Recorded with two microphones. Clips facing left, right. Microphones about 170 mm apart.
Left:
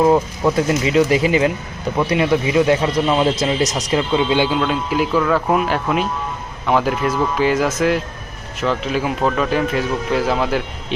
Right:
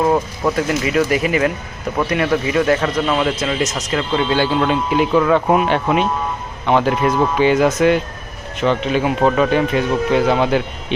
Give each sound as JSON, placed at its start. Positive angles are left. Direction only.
{"t": 0.5, "sound": "speech", "side_deg": 25}
{"t": 3.2, "sound": "speech", "side_deg": 25}
{"t": 3.9, "sound": "speech", "side_deg": 15}
{"t": 4.6, "sound": "speech", "side_deg": 0}